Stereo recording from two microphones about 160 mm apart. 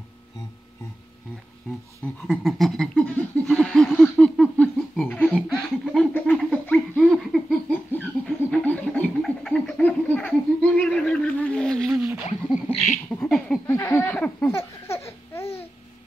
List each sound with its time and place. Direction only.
2.2 s snicker: centre (ahead or behind)
5.6 s laughter: 5° left (ahead or behind)
7.0 s laughter: centre (ahead or behind)
7.7 s a sound: 10° left (ahead or behind)
13.7 s laughter: 15° left (ahead or behind)